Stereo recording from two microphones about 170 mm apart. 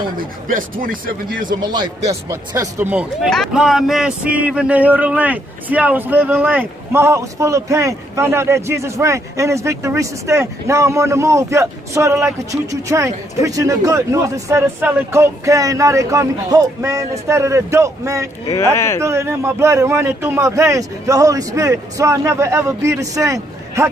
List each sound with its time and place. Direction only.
0.2 s speech: 55° right (ahead or behind)
2.2 s speech: 20° right (ahead or behind)
3.3 s speech: centre (ahead or behind); by 18.3 s 20° right (ahead or behind)
18.5 s speech: 15° left (ahead or behind)
18.9 s speech: 15° right (ahead or behind)